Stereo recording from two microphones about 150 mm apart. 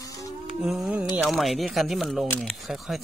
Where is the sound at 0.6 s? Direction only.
5° right (ahead or behind).